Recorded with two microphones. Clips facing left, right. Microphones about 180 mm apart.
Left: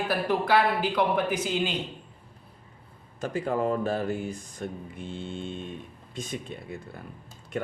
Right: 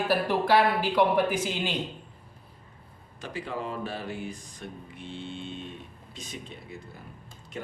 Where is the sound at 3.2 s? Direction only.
45° left (ahead or behind).